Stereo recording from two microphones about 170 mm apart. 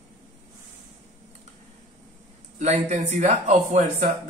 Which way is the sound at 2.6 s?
40° right (ahead or behind).